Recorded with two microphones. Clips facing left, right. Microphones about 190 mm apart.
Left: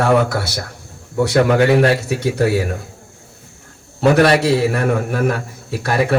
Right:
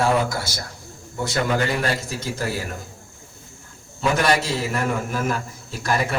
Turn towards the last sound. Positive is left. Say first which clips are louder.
# left 6 dB
turn(degrees=60)  # may be behind; listen again after turning